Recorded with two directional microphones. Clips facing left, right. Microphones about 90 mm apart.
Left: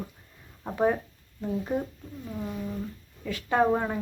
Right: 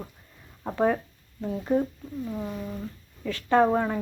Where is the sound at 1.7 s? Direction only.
10° left (ahead or behind).